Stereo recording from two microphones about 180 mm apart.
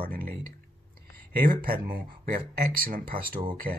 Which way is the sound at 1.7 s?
50° right (ahead or behind).